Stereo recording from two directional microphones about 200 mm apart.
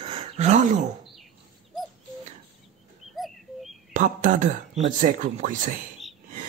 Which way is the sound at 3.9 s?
40° right (ahead or behind).